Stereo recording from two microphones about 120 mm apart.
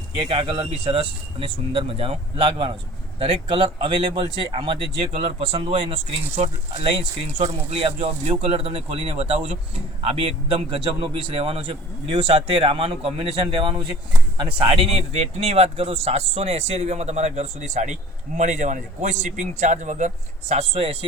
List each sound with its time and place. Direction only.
0.3 s a man's voice: 50° right (ahead or behind)
15.1 s a man's voice: 60° right (ahead or behind)